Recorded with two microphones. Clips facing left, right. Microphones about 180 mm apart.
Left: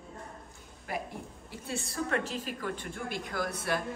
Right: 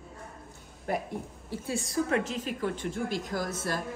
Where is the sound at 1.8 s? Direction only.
Centre (ahead or behind).